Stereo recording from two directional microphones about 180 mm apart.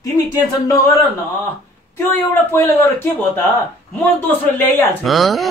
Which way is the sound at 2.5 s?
15° left (ahead or behind).